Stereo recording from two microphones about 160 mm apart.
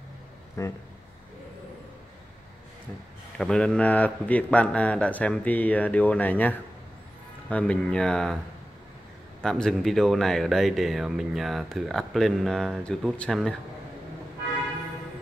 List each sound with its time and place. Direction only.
0.6 s speech: 20° left (ahead or behind)
3.3 s a man's voice: 5° left (ahead or behind)
9.4 s speech: 5° left (ahead or behind)